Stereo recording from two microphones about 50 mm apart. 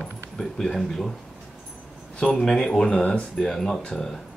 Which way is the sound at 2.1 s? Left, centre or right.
Centre.